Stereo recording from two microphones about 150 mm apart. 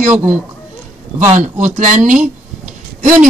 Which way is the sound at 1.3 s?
55° right (ahead or behind).